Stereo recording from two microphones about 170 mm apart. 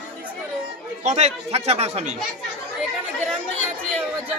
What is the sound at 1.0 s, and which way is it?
Speech, 40° right (ahead or behind).